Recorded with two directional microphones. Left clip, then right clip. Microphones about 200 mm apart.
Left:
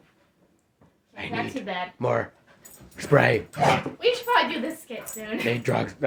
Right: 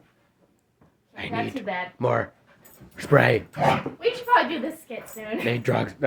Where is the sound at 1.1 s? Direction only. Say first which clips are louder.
Right 1 dB; 15° right (ahead or behind).